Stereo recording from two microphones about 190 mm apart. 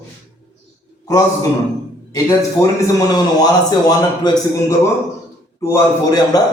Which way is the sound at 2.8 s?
15° left (ahead or behind).